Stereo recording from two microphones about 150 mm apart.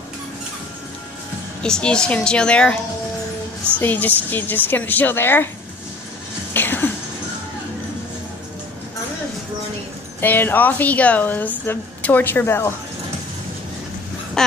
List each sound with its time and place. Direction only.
1.6 s speech: 5° left (ahead or behind)
3.8 s speech: 10° left (ahead or behind)
6.5 s a sound: 15° left (ahead or behind)
10.2 s speech: 15° left (ahead or behind)